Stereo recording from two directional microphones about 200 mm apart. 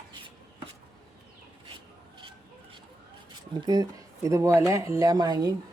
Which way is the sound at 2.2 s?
25° right (ahead or behind).